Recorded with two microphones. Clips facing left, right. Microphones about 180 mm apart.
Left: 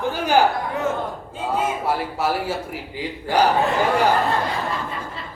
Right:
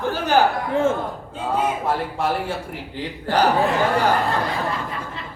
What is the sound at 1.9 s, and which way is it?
A man's voice, 5° left (ahead or behind).